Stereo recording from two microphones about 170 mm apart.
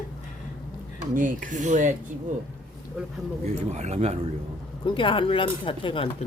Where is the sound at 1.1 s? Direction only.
50° right (ahead or behind).